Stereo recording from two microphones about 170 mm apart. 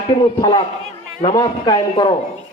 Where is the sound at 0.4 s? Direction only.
25° left (ahead or behind).